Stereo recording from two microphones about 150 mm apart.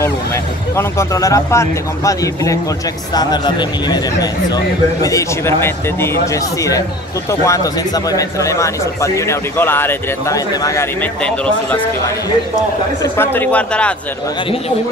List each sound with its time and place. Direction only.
0.7 s a man's voice: 20° left (ahead or behind)
7.4 s a man's voice: 25° left (ahead or behind)
13.0 s speech: 15° left (ahead or behind)